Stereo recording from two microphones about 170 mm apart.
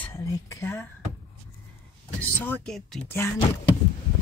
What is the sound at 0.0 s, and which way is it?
Speech, 15° left (ahead or behind).